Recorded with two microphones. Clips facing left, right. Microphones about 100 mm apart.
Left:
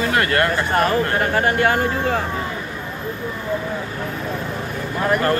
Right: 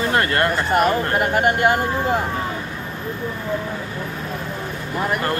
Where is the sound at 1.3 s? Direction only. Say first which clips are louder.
Right 1 dB; 15° right (ahead or behind).